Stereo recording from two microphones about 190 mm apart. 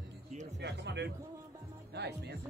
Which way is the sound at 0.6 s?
65° right (ahead or behind).